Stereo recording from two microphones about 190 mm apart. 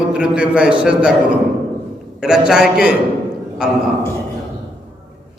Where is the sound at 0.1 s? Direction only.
5° right (ahead or behind).